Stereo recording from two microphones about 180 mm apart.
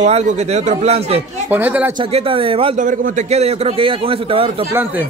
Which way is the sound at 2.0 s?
30° right (ahead or behind).